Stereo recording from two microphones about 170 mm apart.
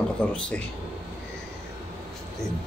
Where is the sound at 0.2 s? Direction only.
5° left (ahead or behind).